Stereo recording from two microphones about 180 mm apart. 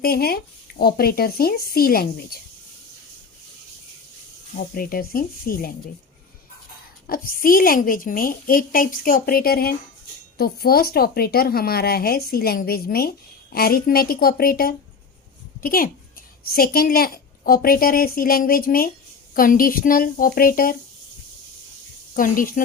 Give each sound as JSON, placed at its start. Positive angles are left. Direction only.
{"t": 0.0, "sound": "a woman's voice", "side_deg": 60}
{"t": 4.5, "sound": "a woman's voice", "side_deg": 55}
{"t": 7.1, "sound": "a woman's voice", "side_deg": 50}
{"t": 22.1, "sound": "a woman's voice", "side_deg": 50}